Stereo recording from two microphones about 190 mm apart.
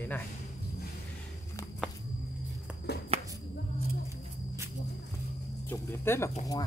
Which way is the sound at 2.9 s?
60° left (ahead or behind).